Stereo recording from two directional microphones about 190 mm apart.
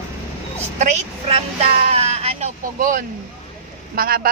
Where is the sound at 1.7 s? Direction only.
35° right (ahead or behind).